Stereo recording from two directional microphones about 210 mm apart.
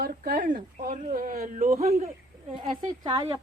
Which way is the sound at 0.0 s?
40° right (ahead or behind).